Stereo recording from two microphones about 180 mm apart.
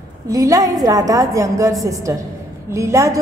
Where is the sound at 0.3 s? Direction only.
20° right (ahead or behind).